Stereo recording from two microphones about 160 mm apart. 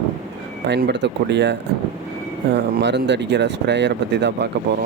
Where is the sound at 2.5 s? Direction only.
90° right.